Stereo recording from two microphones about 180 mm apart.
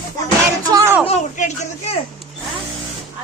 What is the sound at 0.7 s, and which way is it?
Speech, 15° right (ahead or behind).